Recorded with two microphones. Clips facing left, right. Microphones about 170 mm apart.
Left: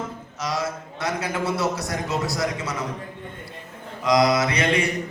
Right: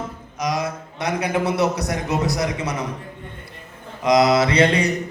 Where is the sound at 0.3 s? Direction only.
15° right (ahead or behind).